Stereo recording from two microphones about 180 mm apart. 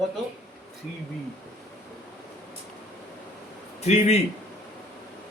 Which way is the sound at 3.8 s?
35° left (ahead or behind).